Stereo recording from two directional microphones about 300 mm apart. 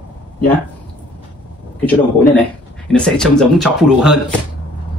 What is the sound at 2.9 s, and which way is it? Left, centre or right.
A man's voice, centre.